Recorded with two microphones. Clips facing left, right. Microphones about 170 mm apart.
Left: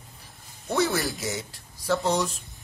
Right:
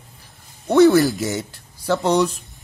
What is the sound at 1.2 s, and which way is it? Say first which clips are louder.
Speech: right 8 dB; 60° right (ahead or behind).